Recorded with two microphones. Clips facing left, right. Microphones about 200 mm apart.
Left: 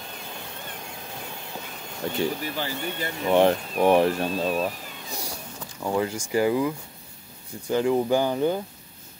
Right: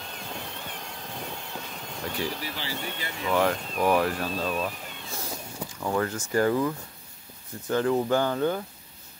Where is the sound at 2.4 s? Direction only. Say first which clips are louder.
Left 4 dB; 50° left (ahead or behind).